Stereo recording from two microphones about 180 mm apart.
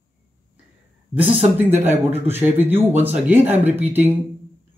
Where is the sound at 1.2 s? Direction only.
30° right (ahead or behind).